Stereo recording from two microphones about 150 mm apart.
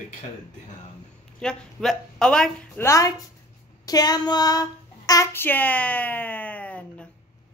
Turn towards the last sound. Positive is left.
turn(degrees=10)  # may be behind; listen again after turning